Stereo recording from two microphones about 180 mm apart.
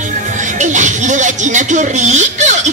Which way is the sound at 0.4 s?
45° right (ahead or behind).